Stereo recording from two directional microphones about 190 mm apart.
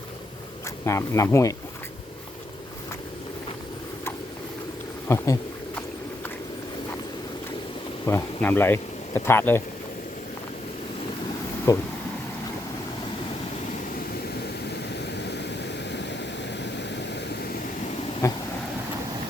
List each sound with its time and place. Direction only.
0.9 s speech: 15° left (ahead or behind)
5.0 s a sound: 15° left (ahead or behind)
8.0 s speech: 10° left (ahead or behind)
11.7 s speech: 20° left (ahead or behind)
15.2 s vehicle: 65° left (ahead or behind)
18.2 s a sound: 15° left (ahead or behind)